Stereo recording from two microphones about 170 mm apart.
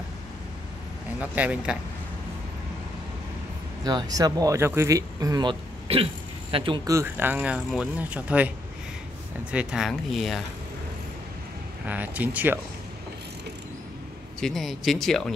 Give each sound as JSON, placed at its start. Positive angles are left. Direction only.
{"t": 1.2, "sound": "speech", "side_deg": -10}
{"t": 3.8, "sound": "speech", "side_deg": -20}
{"t": 9.5, "sound": "speech", "side_deg": -5}
{"t": 11.8, "sound": "speech", "side_deg": -10}
{"t": 14.4, "sound": "speech", "side_deg": 0}